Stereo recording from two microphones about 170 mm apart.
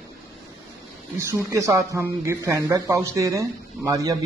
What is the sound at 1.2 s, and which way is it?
A man's voice, 15° right (ahead or behind).